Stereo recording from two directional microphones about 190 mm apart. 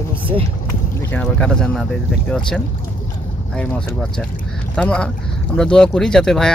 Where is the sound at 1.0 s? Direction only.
10° left (ahead or behind).